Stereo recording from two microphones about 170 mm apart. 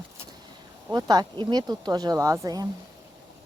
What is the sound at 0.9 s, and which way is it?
Speech, 25° right (ahead or behind).